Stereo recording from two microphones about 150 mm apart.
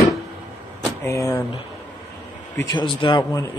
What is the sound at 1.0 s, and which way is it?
Speech, 20° left (ahead or behind).